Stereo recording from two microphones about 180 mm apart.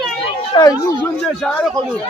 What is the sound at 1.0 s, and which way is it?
Speech, 5° left (ahead or behind).